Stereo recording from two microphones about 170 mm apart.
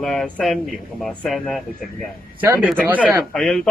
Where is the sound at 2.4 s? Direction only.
10° right (ahead or behind).